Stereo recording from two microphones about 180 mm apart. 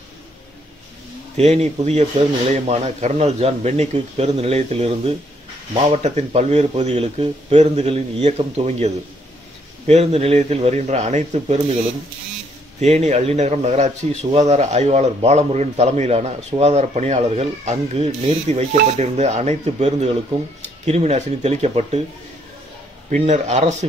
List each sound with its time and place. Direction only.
1.3 s speech: 35° right (ahead or behind)
12.8 s speech: 40° right (ahead or behind)
23.0 s speech: 40° right (ahead or behind)